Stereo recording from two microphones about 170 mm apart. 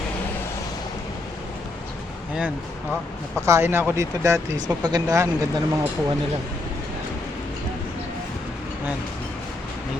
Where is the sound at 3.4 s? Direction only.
15° right (ahead or behind).